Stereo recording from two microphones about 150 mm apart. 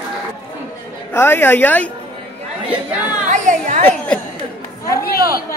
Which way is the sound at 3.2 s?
55° right (ahead or behind).